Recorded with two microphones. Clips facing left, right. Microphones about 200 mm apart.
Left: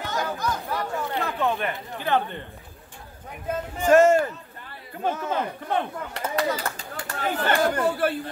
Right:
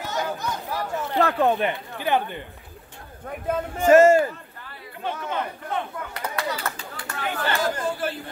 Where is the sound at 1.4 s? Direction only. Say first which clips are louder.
Right 1 dB; 35° right (ahead or behind).